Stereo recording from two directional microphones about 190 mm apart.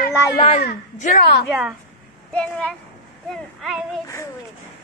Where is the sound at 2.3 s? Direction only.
5° left (ahead or behind).